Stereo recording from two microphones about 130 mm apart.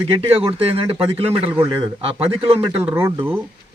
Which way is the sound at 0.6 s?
45° right (ahead or behind).